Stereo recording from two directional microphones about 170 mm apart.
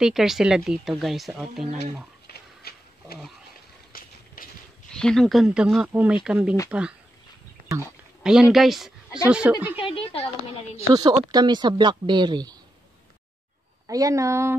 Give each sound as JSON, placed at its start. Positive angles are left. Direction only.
{"t": 0.0, "sound": "speech", "side_deg": 0}
{"t": 2.2, "sound": "pig", "side_deg": 65}
{"t": 3.9, "sound": "a sound", "side_deg": 60}
{"t": 4.9, "sound": "speech", "side_deg": 5}
{"t": 8.2, "sound": "speech", "side_deg": -5}
{"t": 9.8, "sound": "speech", "side_deg": 35}
{"t": 10.9, "sound": "speech", "side_deg": -25}
{"t": 13.8, "sound": "speech", "side_deg": -20}